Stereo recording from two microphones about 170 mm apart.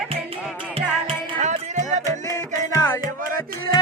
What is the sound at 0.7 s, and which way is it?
Music, 35° right (ahead or behind).